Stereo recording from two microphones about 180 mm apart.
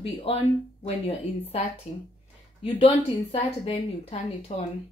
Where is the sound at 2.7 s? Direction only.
30° left (ahead or behind).